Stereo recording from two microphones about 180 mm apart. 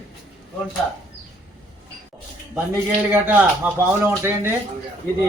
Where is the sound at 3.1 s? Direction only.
10° right (ahead or behind).